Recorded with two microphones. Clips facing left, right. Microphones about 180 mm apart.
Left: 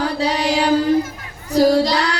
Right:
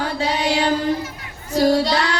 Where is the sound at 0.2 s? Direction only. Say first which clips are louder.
Even; 35° left (ahead or behind).